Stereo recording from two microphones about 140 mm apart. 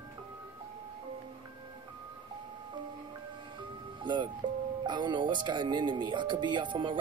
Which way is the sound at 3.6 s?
35° right (ahead or behind).